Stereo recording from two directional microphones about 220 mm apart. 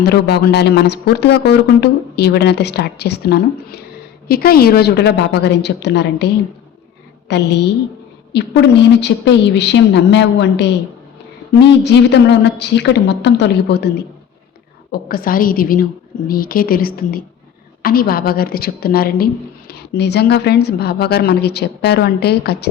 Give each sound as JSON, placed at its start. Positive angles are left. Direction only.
{"t": 0.0, "sound": "a woman's voice", "side_deg": 45}
{"t": 14.9, "sound": "a woman's voice", "side_deg": 40}